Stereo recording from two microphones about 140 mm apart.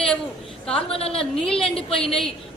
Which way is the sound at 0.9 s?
45° left (ahead or behind).